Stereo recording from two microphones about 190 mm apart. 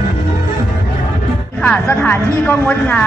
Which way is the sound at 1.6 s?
10° left (ahead or behind).